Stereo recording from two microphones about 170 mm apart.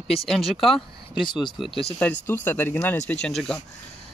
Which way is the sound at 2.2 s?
10° left (ahead or behind).